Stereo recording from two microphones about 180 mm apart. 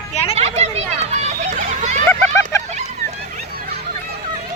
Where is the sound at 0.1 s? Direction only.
35° left (ahead or behind).